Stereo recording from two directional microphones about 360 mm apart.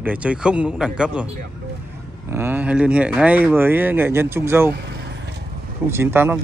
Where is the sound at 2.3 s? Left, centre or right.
Centre.